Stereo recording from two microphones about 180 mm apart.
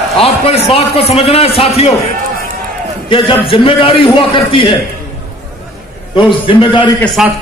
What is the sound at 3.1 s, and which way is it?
A man's voice, 30° left (ahead or behind).